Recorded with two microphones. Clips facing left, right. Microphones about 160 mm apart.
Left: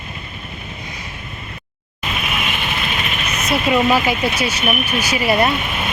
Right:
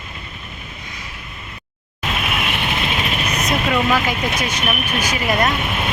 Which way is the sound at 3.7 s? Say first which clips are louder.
Left 5 dB; 10° left (ahead or behind).